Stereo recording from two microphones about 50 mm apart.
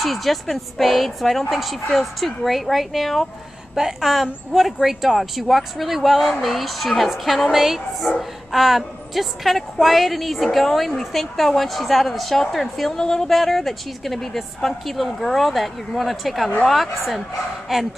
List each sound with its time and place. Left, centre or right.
0.0 s a woman's voice: centre